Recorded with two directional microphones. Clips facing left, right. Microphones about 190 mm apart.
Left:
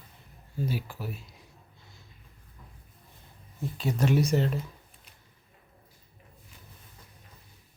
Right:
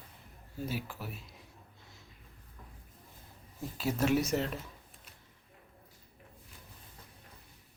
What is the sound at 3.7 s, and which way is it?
Speech, centre (ahead or behind).